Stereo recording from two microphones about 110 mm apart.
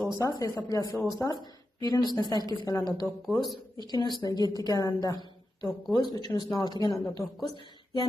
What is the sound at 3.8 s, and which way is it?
Speech, 40° left (ahead or behind).